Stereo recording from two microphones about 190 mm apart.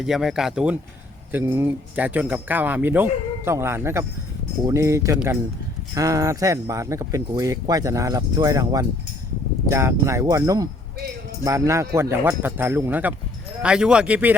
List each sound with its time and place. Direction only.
0.0 s speech: centre (ahead or behind)